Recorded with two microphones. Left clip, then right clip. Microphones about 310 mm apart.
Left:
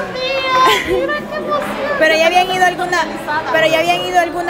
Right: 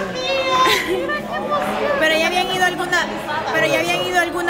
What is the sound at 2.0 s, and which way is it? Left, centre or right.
A woman's voice, centre.